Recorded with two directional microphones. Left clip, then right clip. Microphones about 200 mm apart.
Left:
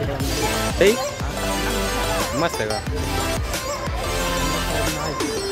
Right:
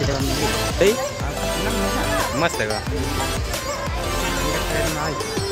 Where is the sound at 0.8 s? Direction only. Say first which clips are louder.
Left 1 dB; 20° left (ahead or behind).